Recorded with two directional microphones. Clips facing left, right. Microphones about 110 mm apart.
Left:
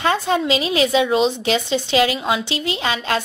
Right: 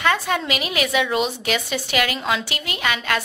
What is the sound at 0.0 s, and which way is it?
Speech, 25° left (ahead or behind).